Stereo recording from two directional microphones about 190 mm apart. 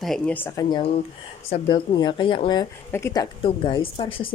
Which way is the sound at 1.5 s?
30° left (ahead or behind).